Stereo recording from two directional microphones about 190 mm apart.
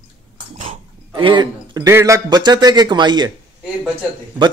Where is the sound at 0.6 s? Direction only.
30° right (ahead or behind).